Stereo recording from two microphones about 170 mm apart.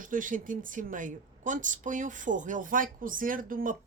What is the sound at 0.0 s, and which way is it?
Speech, 50° right (ahead or behind).